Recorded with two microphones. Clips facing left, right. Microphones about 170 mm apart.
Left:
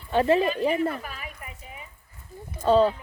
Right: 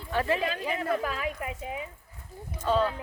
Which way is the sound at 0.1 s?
25° left (ahead or behind).